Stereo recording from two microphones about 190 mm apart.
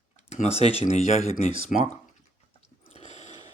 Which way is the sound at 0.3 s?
35° left (ahead or behind).